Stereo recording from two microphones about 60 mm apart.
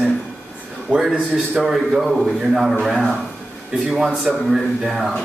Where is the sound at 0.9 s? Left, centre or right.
Left.